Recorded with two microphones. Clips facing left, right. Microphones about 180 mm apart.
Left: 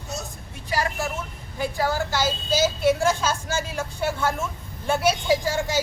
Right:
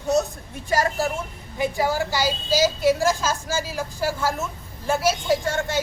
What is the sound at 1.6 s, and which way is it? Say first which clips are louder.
A woman's voice: right 2 dB; 15° right (ahead or behind).